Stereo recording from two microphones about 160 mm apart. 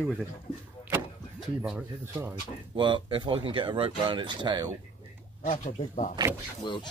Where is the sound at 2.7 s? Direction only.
30° right (ahead or behind).